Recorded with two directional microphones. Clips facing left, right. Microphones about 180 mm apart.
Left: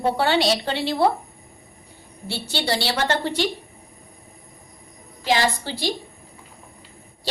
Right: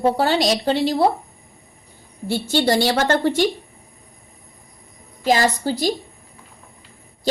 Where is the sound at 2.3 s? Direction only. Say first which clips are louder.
Right 7 dB; 45° right (ahead or behind).